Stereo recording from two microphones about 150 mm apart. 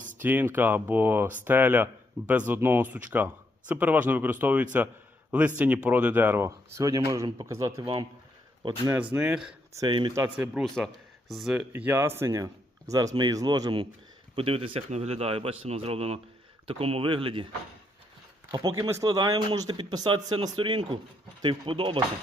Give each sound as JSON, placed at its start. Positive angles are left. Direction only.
{"t": 0.2, "sound": "speech", "side_deg": -10}
{"t": 8.9, "sound": "speech", "side_deg": -15}
{"t": 9.7, "sound": "speech", "side_deg": -30}
{"t": 10.3, "sound": "speech", "side_deg": -5}
{"t": 11.7, "sound": "a man's voice", "side_deg": -15}
{"t": 18.5, "sound": "a man's voice", "side_deg": -25}